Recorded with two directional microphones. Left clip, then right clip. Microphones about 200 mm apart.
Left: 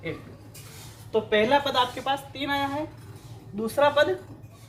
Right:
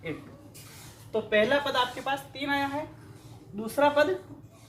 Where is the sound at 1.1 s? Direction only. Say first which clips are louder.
Left 3 dB; 25° left (ahead or behind).